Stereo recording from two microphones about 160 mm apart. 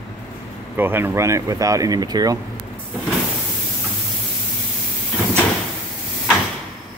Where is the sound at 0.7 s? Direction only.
15° right (ahead or behind).